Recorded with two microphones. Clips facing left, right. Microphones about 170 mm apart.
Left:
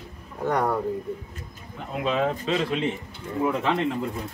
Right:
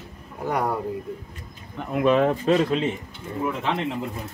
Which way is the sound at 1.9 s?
55° right (ahead or behind).